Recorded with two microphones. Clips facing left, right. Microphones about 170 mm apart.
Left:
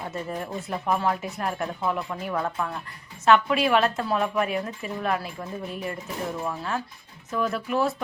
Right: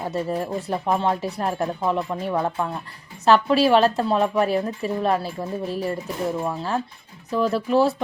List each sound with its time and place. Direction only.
0.0 s speech: 30° right (ahead or behind)